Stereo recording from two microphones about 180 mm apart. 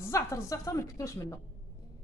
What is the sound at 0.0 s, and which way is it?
Speech, 15° left (ahead or behind).